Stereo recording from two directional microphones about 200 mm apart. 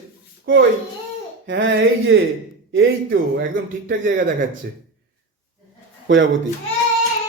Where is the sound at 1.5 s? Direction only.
70° right (ahead or behind).